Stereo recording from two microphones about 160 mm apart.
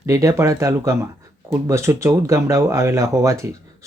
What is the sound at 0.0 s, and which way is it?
Speech, 20° right (ahead or behind).